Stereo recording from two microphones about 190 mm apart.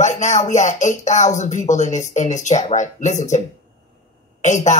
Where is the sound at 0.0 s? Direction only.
40° left (ahead or behind).